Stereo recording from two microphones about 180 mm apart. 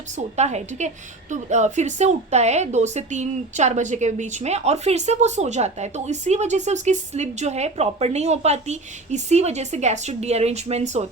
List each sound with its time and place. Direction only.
0.2 s a woman's voice: 40° right (ahead or behind)